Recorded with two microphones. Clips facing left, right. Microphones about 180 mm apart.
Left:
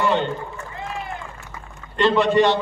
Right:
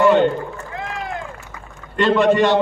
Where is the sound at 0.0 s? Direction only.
50° right (ahead or behind).